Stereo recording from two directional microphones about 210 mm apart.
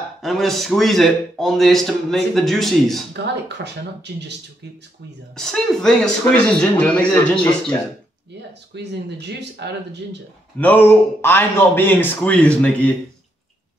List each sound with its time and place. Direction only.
0.2 s a man's voice: centre (ahead or behind)
3.1 s speech: 55° right (ahead or behind)
5.3 s a man's voice: centre (ahead or behind)
8.4 s speech: 55° right (ahead or behind)
10.6 s a man's voice: 10° left (ahead or behind)